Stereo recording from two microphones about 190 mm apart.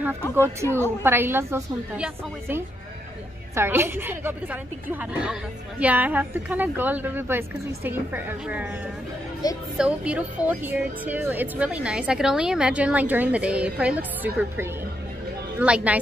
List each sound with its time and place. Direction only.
0.7 s a woman's voice: 10° left (ahead or behind)
1.0 s a woman's voice: 10° right (ahead or behind)
9.4 s speech: 20° left (ahead or behind)
9.8 s a woman's voice: 5° right (ahead or behind)